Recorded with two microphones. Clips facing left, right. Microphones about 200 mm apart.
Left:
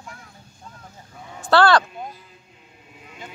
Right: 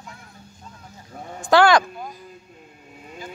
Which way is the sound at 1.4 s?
15° right (ahead or behind).